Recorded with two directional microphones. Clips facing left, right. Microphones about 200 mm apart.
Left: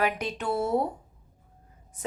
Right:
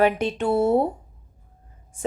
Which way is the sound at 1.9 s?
30° right (ahead or behind).